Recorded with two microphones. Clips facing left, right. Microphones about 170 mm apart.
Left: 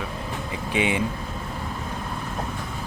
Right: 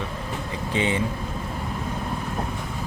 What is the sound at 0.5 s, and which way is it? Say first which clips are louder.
Vehicle: even; 15° left (ahead or behind).